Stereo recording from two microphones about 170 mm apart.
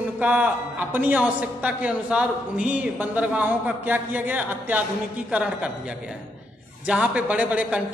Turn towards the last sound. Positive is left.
turn(degrees=-10)  # may be behind; listen again after turning